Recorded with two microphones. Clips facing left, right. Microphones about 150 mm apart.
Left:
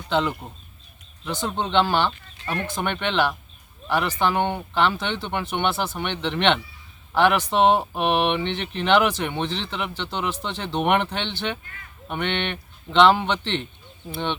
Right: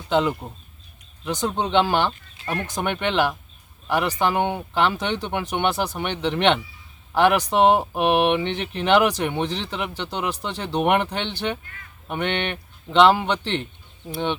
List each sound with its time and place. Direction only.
0.1 s speech: 10° right (ahead or behind)